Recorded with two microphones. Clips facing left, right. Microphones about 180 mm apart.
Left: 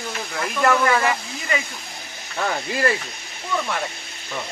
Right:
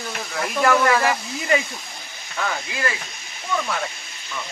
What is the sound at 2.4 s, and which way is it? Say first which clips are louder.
Speech: left 3 dB; 35° left (ahead or behind).